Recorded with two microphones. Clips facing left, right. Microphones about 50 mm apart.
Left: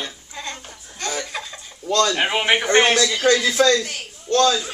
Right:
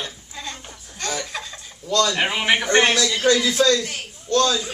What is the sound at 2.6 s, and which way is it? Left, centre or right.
A man's voice, left.